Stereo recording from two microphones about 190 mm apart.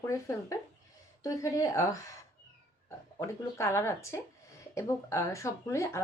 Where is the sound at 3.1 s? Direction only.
15° left (ahead or behind).